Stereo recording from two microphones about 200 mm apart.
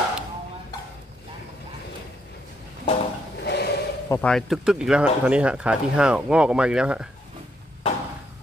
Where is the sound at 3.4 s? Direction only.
55° left (ahead or behind).